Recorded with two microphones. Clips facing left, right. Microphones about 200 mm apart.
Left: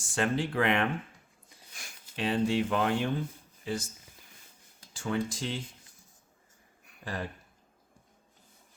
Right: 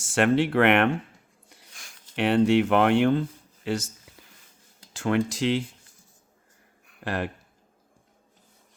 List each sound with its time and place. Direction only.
0.0 s speech: 70° right (ahead or behind)
1.8 s a sound: 10° left (ahead or behind)
2.1 s speech: 70° right (ahead or behind)
4.9 s speech: 75° right (ahead or behind)
7.0 s speech: 75° right (ahead or behind)